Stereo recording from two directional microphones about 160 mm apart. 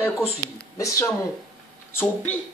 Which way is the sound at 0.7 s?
20° left (ahead or behind).